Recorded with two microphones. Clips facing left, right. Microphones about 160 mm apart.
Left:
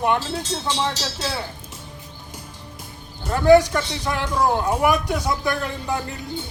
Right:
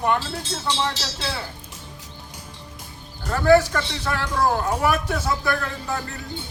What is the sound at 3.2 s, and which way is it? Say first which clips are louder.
Speech: left 2 dB; 15° left (ahead or behind).